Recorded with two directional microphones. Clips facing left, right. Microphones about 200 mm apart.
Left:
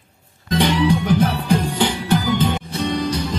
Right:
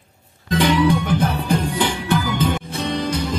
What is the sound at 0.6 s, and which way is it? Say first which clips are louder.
Music: right 1 dB; 55° right (ahead or behind).